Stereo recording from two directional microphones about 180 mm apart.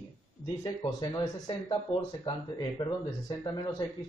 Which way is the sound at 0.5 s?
20° left (ahead or behind).